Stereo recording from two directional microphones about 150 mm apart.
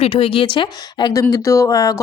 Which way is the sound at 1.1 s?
20° left (ahead or behind).